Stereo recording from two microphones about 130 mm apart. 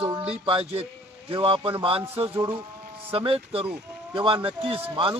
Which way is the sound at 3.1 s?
45° right (ahead or behind).